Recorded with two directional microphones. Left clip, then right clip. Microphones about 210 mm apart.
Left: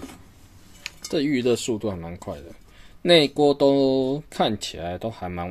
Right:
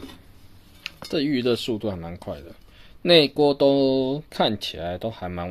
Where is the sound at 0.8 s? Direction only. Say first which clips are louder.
Left 1 dB; 5° right (ahead or behind).